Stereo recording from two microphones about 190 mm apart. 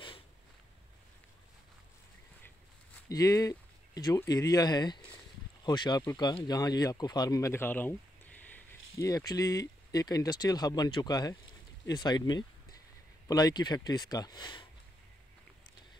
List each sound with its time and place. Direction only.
3.1 s speech: 20° left (ahead or behind)